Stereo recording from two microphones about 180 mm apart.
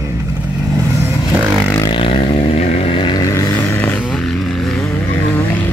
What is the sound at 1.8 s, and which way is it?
Vehicle, 30° left (ahead or behind).